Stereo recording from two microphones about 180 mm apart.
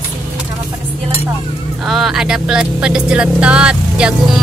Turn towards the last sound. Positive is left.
turn(degrees=-5)  # may be behind; listen again after turning